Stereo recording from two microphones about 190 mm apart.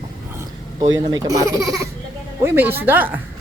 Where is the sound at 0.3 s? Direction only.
20° right (ahead or behind).